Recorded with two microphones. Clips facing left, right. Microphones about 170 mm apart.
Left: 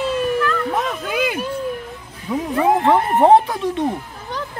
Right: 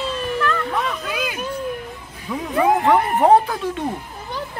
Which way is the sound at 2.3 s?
20° left (ahead or behind).